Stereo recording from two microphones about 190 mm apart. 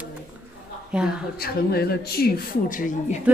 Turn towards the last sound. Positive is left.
turn(degrees=45)  # may be behind; listen again after turning